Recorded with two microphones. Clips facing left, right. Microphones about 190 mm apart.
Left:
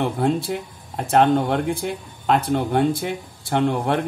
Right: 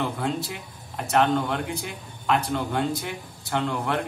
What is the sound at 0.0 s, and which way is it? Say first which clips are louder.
Speech: left 6 dB; 55° left (ahead or behind).